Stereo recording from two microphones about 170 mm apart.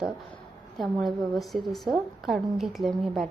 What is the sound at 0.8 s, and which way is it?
A woman's voice, centre (ahead or behind).